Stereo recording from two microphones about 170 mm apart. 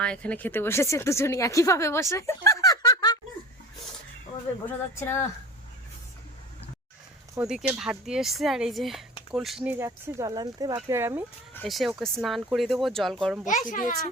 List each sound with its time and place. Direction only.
0.0 s speech: 5° left (ahead or behind); by 3.2 s 25° left (ahead or behind)
4.9 s speech: 15° left (ahead or behind)
7.4 s speech: 5° right (ahead or behind)
9.7 s speech: 15° right (ahead or behind)
11.7 s speech: centre (ahead or behind)
13.4 s a child's voice: 45° left (ahead or behind)